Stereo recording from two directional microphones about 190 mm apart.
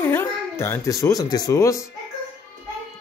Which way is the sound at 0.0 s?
10° left (ahead or behind).